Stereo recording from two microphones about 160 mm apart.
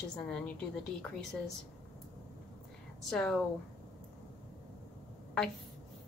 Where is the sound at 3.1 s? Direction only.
5° left (ahead or behind).